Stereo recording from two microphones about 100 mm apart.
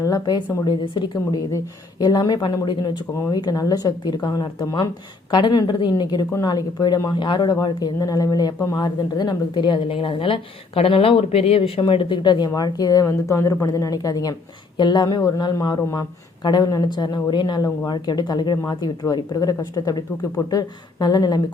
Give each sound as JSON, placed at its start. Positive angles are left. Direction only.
{"t": 0.0, "sound": "a woman's voice", "side_deg": 40}
{"t": 8.8, "sound": "a woman's voice", "side_deg": 45}